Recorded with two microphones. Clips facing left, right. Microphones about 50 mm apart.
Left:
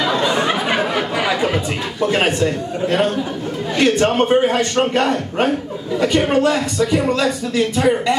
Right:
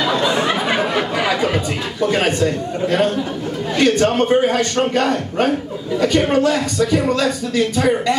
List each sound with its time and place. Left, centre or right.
0.3 s a sound: centre
1.3 s chatter: centre
2.0 s speech: left